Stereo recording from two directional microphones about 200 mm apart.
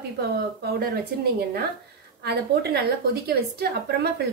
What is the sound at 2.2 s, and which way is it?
A woman's voice, 55° right (ahead or behind).